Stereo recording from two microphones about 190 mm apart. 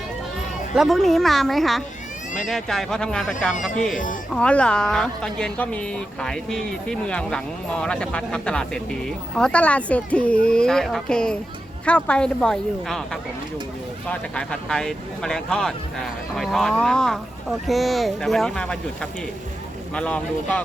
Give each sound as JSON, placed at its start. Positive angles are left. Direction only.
{"t": 0.8, "sound": "speech", "side_deg": 0}
{"t": 3.9, "sound": "speech", "side_deg": 45}
{"t": 4.4, "sound": "speech", "side_deg": 5}
{"t": 14.1, "sound": "speech", "side_deg": 5}
{"t": 19.9, "sound": "speech", "side_deg": 5}